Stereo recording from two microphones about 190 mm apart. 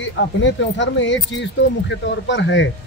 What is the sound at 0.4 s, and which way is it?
Speech, 70° left (ahead or behind).